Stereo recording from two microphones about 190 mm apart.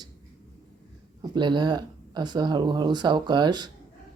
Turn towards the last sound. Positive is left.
turn(degrees=-25)  # may be behind; listen again after turning